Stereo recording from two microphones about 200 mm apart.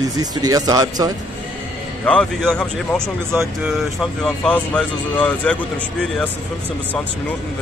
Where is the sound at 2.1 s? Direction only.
5° left (ahead or behind).